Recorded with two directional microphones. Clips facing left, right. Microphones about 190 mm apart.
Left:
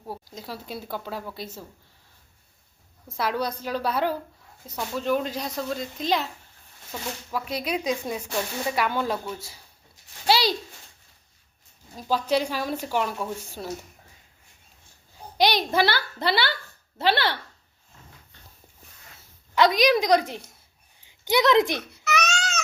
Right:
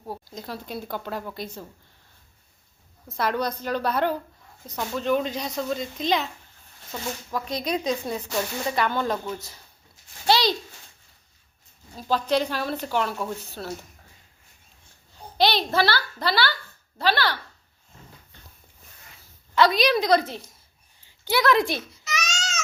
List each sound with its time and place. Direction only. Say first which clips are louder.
0.3 s speech: right 3 dB; 5° left (ahead or behind)
3.2 s speech: right 1 dB; 5° left (ahead or behind)
7.3 s a woman's voice: right 1 dB; 5° left (ahead or behind)
10.2 s a sound: right 1 dB; 5° left (ahead or behind)
11.9 s a woman's voice: right 1 dB; 10° left (ahead or behind)
15.4 s a woman's voice: even; 15° left (ahead or behind)
19.5 s a woman's voice: left 1 dB; 15° left (ahead or behind)
21.9 s baby cry: left 6 dB; 60° left (ahead or behind)